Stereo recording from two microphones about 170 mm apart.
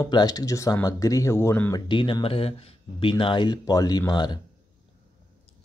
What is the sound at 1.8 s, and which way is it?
Speech, 30° left (ahead or behind).